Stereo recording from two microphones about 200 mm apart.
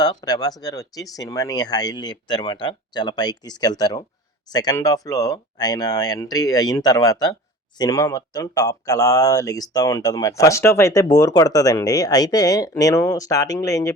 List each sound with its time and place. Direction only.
0.0 s speech: 20° left (ahead or behind)